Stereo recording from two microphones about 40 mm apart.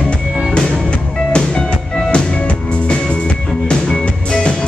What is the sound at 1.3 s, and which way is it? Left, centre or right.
Music, left.